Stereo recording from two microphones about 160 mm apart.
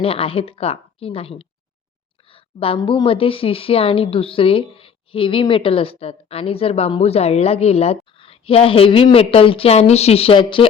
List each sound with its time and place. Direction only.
0.0 s a woman's voice: 35° left (ahead or behind)